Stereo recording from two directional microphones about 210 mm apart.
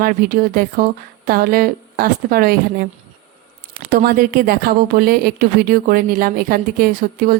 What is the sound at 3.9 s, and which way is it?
Speech, 45° right (ahead or behind).